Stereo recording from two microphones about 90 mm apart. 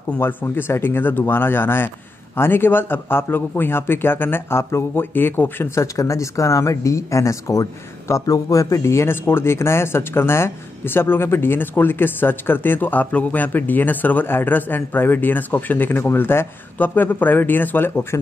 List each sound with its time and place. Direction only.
0.2 s speech: 20° left (ahead or behind)
5.8 s speech: 35° left (ahead or behind)